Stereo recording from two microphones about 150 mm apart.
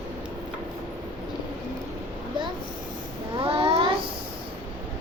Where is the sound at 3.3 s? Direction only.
40° right (ahead or behind).